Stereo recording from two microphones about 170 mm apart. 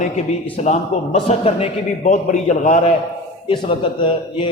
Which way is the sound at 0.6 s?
40° left (ahead or behind).